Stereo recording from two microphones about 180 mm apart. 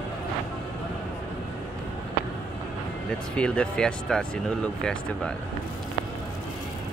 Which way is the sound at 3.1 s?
5° left (ahead or behind).